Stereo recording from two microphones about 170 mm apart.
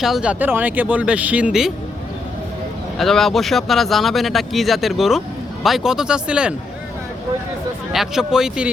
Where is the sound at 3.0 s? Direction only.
Centre (ahead or behind).